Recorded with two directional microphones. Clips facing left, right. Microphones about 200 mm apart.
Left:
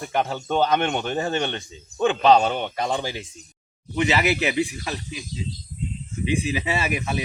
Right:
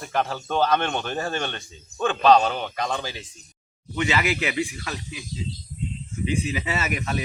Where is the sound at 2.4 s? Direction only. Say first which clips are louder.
Left 2 dB; 25° left (ahead or behind).